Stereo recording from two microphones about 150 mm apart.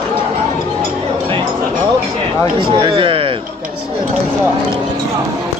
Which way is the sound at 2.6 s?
35° right (ahead or behind).